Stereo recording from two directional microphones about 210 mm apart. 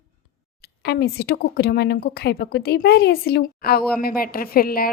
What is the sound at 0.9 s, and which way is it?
A woman's voice, 50° left (ahead or behind).